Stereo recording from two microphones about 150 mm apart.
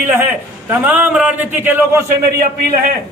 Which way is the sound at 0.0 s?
15° right (ahead or behind).